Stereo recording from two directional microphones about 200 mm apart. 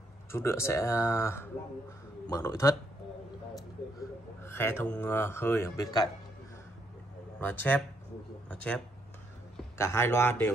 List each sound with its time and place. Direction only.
0.3 s speech: 15° left (ahead or behind)
4.4 s speech: 10° left (ahead or behind)
7.3 s speech: 10° left (ahead or behind)